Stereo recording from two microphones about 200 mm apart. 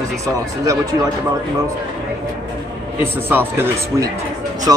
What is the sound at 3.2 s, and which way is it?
Speech, 10° right (ahead or behind).